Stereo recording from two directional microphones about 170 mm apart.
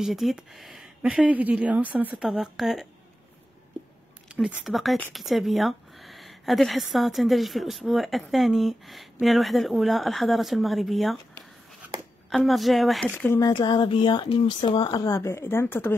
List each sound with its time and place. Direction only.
0.0 s speech: centre (ahead or behind)
4.3 s speech: 5° right (ahead or behind)
12.3 s speech: centre (ahead or behind)
13.4 s speech: 30° left (ahead or behind)